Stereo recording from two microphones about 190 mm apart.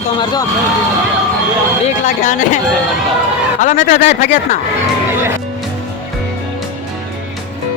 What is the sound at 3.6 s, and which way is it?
Speech, 40° left (ahead or behind).